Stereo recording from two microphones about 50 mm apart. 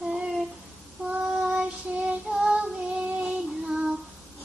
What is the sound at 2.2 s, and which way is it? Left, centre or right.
Child singing, centre.